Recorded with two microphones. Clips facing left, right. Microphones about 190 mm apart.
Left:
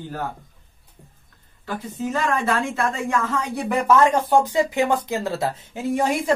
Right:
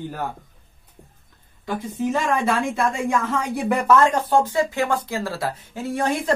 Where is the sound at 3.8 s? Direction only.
10° left (ahead or behind).